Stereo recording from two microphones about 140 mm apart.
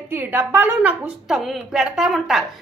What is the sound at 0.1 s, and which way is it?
Speech, 15° right (ahead or behind).